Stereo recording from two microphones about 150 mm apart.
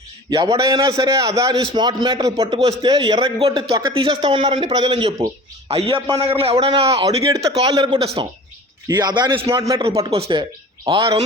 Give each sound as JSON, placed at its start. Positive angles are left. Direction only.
{"t": 0.3, "sound": "a man's voice", "side_deg": -25}
{"t": 2.5, "sound": "speech", "side_deg": -45}
{"t": 2.8, "sound": "a man's voice", "side_deg": -25}
{"t": 7.9, "sound": "a man's voice", "side_deg": -40}
{"t": 8.9, "sound": "a man's voice", "side_deg": -30}
{"t": 9.5, "sound": "a man's voice", "side_deg": -20}
{"t": 9.8, "sound": "a man's voice", "side_deg": -40}